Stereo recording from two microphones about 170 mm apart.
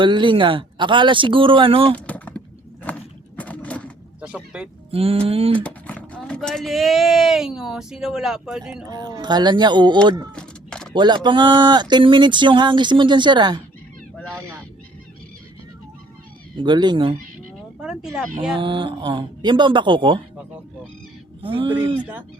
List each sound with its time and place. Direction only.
0.0 s speech: 30° right (ahead or behind)
2.0 s a sound: 10° left (ahead or behind)
4.2 s speech: 5° right (ahead or behind)
4.9 s a sound: 35° right (ahead or behind)
5.6 s speech: 10° left (ahead or behind)
8.9 s speech: 25° right (ahead or behind)
10.3 s a sound: 5° left (ahead or behind)
10.9 s speech: 25° right (ahead or behind)
16.6 s speech: 25° right (ahead or behind)
17.7 s speech: 5° right (ahead or behind)
18.5 s speech: 30° right (ahead or behind)
21.4 s a sound: 30° right (ahead or behind)